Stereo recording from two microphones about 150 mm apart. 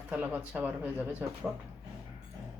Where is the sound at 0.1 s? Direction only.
10° right (ahead or behind).